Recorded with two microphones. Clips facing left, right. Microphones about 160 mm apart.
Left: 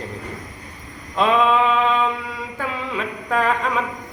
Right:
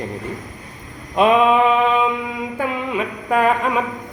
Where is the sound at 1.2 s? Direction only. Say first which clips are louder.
Right 3 dB; 15° right (ahead or behind).